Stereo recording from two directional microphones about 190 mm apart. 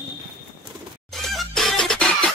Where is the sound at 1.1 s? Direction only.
Centre (ahead or behind).